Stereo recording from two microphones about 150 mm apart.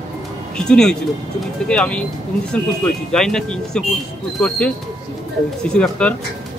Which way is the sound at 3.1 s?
5° left (ahead or behind).